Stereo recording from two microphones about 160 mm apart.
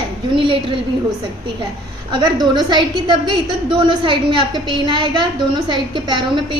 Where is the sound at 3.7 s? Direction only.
30° right (ahead or behind).